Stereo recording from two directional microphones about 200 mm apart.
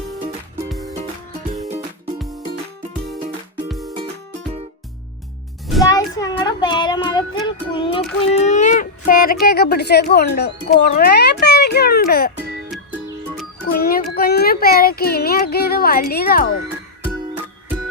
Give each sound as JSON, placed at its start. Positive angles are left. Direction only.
{"t": 3.7, "sound": "music", "side_deg": 0}
{"t": 5.8, "sound": "child singing", "side_deg": 20}
{"t": 10.7, "sound": "speech", "side_deg": 50}
{"t": 12.7, "sound": "music", "side_deg": 0}
{"t": 13.7, "sound": "speech", "side_deg": 45}